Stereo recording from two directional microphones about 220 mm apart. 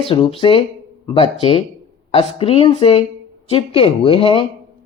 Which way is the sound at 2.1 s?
25° left (ahead or behind).